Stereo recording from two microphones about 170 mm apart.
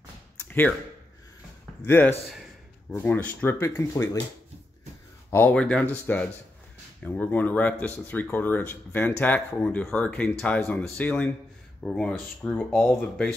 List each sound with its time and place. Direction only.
0.5 s a sound: 10° left (ahead or behind)
1.9 s speech: 10° left (ahead or behind)
5.3 s speech: 10° left (ahead or behind)